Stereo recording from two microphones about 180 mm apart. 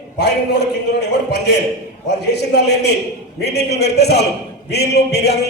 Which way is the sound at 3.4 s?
65° left (ahead or behind).